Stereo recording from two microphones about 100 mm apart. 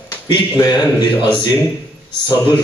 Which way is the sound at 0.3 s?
45° left (ahead or behind).